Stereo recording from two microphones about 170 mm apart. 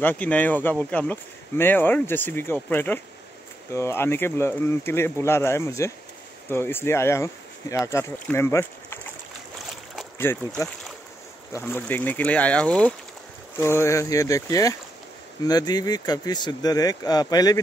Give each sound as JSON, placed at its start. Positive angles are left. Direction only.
{"t": 0.0, "sound": "speech", "side_deg": 10}
{"t": 10.1, "sound": "speech", "side_deg": 15}